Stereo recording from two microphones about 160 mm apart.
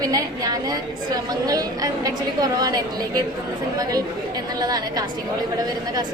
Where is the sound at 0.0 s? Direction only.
20° right (ahead or behind).